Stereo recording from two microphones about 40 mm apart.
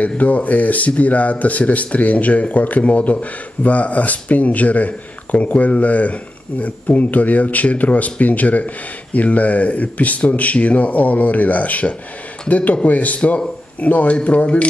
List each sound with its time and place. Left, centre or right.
0.0 s speech: left